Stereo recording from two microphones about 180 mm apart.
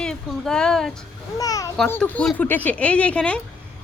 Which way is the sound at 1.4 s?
20° left (ahead or behind).